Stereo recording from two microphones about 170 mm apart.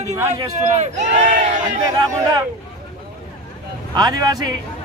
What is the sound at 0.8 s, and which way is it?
Speech, 45° right (ahead or behind).